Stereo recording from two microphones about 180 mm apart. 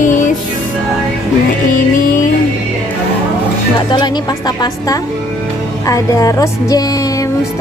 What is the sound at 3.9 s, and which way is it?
A woman's voice, 25° left (ahead or behind).